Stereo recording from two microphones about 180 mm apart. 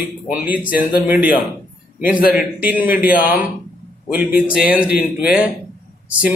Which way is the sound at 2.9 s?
50° left (ahead or behind).